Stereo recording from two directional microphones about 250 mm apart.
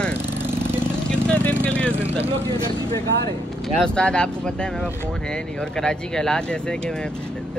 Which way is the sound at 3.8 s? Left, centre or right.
Centre.